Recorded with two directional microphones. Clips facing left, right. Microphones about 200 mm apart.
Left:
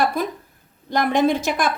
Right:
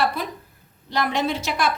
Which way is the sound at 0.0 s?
50° left (ahead or behind).